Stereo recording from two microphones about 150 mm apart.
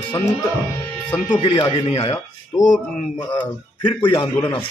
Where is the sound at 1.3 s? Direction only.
35° left (ahead or behind).